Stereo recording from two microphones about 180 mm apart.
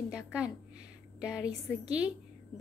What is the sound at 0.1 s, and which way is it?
A woman's voice, 5° right (ahead or behind).